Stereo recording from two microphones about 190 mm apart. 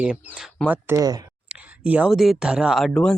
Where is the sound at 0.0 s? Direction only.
5° right (ahead or behind).